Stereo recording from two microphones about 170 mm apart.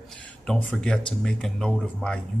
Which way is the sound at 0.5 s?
5° left (ahead or behind).